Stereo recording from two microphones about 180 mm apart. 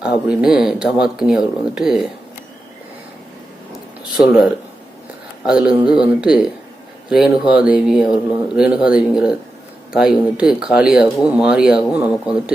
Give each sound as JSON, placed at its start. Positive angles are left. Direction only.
{"t": 0.0, "sound": "speech", "side_deg": -5}
{"t": 4.2, "sound": "speech", "side_deg": -5}